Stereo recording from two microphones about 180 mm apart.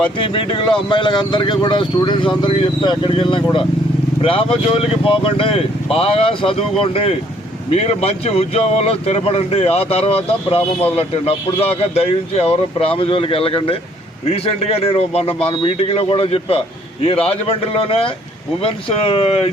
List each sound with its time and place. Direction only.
0.2 s speech: 30° left (ahead or behind)